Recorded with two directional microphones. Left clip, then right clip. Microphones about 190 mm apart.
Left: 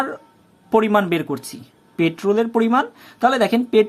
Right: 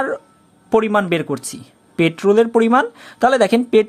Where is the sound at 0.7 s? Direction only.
15° right (ahead or behind).